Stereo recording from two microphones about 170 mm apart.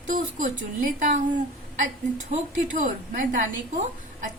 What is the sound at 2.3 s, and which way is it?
A woman's voice, 50° right (ahead or behind).